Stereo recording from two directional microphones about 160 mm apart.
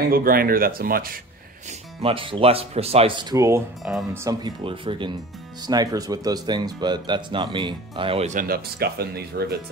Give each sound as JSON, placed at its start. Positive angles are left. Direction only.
{"t": 0.0, "sound": "speech", "side_deg": -65}
{"t": 1.7, "sound": "speech", "side_deg": -40}
{"t": 8.3, "sound": "speech", "side_deg": -60}